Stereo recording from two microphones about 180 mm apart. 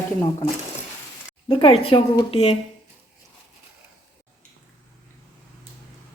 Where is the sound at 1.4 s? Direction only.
25° left (ahead or behind).